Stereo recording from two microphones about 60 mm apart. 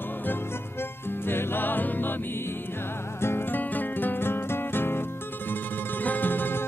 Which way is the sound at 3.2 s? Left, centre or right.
Left.